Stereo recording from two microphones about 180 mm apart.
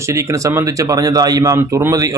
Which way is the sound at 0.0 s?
15° right (ahead or behind).